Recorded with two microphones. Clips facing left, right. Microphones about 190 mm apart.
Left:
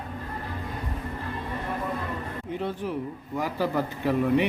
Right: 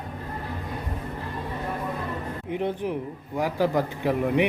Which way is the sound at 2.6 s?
15° right (ahead or behind).